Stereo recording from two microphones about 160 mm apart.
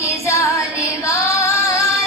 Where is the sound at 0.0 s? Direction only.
20° left (ahead or behind).